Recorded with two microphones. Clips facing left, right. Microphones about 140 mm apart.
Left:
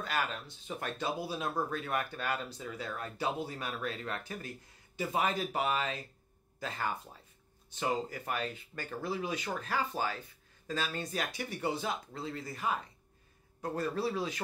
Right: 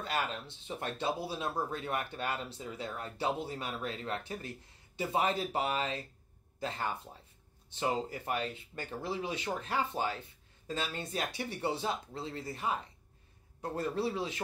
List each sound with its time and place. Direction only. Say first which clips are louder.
0.0 s speech: even; 25° right (ahead or behind)